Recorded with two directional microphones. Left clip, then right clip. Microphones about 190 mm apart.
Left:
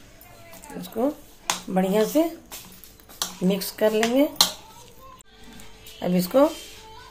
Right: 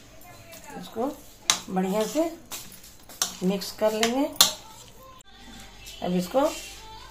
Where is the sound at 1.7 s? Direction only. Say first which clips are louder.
Left 4 dB; 55° left (ahead or behind).